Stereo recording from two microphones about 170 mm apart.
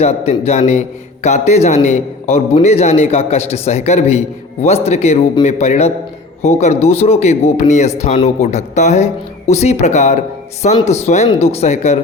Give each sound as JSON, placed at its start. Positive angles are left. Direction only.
{"t": 0.0, "sound": "speech", "side_deg": 40}